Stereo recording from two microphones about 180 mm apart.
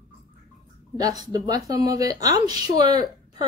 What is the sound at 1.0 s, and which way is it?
Speech, 20° right (ahead or behind).